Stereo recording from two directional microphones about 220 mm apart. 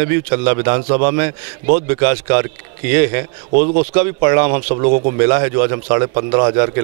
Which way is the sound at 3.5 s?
40° right (ahead or behind).